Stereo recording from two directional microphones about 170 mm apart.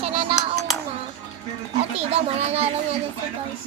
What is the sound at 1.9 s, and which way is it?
Speech, 35° right (ahead or behind).